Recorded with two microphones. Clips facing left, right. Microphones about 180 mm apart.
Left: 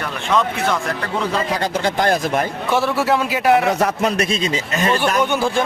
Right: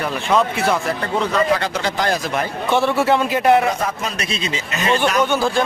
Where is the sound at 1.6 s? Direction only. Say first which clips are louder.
Left 2 dB; 50° left (ahead or behind).